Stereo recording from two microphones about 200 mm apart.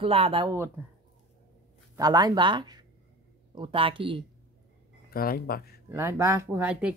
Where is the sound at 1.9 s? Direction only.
20° right (ahead or behind).